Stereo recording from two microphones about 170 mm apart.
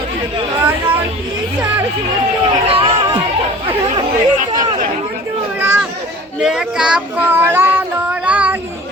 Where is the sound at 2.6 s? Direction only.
35° right (ahead or behind).